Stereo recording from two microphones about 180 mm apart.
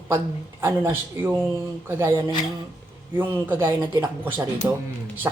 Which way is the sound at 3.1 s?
10° right (ahead or behind).